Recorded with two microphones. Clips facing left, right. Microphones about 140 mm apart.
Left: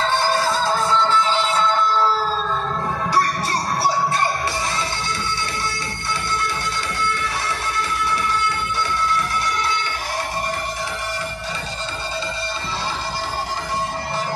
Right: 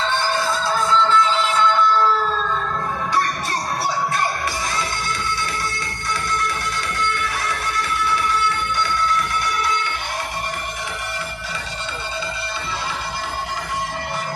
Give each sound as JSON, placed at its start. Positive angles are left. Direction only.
{"t": 0.1, "sound": "music", "side_deg": 35}